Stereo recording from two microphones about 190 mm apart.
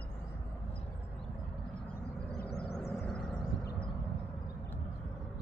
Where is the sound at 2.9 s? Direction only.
5° left (ahead or behind).